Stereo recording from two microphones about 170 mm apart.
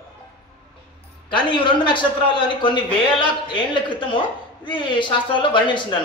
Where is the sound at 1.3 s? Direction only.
30° left (ahead or behind).